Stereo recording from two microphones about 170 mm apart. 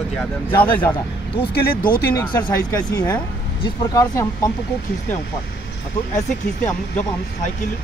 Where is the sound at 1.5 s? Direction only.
60° left (ahead or behind).